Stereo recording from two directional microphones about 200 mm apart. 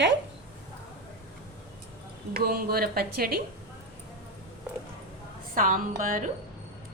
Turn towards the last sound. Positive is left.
turn(degrees=-45)  # may be behind; listen again after turning